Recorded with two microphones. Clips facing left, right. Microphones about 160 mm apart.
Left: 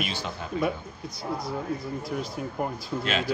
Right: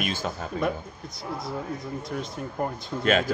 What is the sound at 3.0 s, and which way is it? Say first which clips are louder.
Speech: right 7 dB; 50° right (ahead or behind).